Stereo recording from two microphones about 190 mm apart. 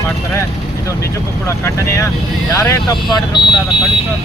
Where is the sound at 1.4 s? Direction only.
15° left (ahead or behind).